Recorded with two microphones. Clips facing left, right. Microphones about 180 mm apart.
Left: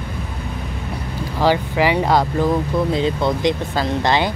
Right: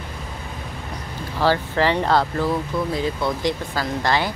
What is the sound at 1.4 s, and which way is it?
Speech, 15° left (ahead or behind).